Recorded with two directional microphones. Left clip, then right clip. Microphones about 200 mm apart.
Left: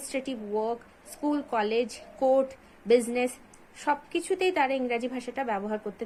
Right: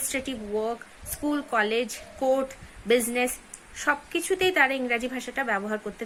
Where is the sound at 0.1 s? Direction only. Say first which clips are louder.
Even; 15° right (ahead or behind).